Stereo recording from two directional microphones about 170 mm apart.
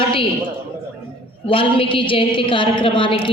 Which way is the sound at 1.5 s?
30° left (ahead or behind).